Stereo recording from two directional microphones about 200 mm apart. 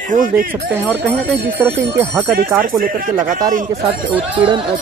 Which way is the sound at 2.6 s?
45° right (ahead or behind).